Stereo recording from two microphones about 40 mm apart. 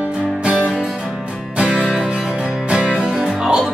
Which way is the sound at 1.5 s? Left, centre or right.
Right.